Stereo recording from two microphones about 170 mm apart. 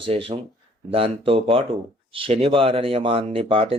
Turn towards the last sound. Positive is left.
turn(degrees=-35)  # may be behind; listen again after turning